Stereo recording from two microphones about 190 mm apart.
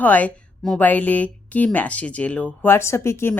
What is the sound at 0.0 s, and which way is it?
A woman's voice, 10° left (ahead or behind).